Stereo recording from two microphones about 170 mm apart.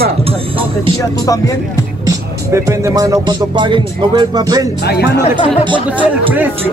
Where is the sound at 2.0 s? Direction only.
15° right (ahead or behind).